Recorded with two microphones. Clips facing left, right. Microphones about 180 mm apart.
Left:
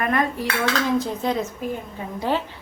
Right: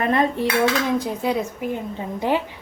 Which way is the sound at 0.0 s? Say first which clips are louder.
Right 3 dB; 25° right (ahead or behind).